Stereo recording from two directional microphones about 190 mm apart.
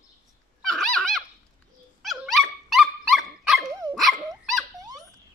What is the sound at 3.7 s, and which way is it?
Dog, 20° right (ahead or behind).